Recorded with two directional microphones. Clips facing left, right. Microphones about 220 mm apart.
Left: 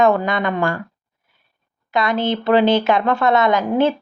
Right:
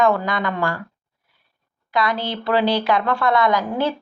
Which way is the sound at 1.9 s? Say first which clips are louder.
Left 4 dB; 25° left (ahead or behind).